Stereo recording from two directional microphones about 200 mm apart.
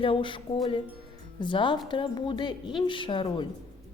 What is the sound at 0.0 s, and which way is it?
Speech, 25° left (ahead or behind).